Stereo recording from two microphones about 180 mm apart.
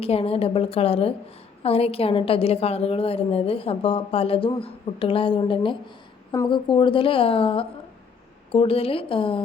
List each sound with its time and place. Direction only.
0.0 s a woman's voice: 35° left (ahead or behind)